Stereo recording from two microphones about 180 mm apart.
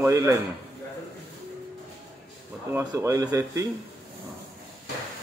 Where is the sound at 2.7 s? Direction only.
15° right (ahead or behind).